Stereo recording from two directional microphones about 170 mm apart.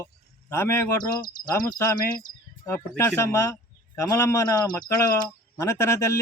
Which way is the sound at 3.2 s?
20° left (ahead or behind).